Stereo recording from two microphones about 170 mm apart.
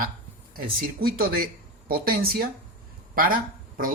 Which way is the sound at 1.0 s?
60° right (ahead or behind).